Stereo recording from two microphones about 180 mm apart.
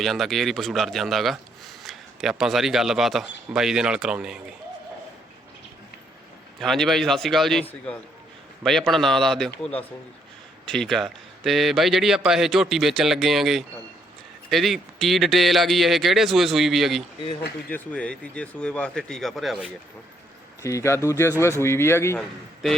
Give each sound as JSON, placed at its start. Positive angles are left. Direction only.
{"t": 0.0, "sound": "speech", "side_deg": 0}
{"t": 6.6, "sound": "speech", "side_deg": 0}
{"t": 10.7, "sound": "speech", "side_deg": 0}
{"t": 20.6, "sound": "speech", "side_deg": 15}